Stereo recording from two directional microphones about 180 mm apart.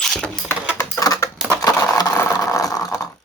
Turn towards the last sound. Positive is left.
turn(degrees=20)  # may be behind; listen again after turning